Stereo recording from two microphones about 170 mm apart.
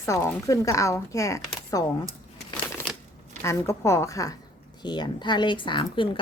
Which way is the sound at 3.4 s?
15° left (ahead or behind).